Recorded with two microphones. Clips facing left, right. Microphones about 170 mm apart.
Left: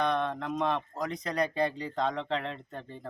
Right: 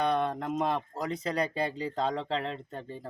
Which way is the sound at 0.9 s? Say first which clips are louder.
Even; 30° right (ahead or behind).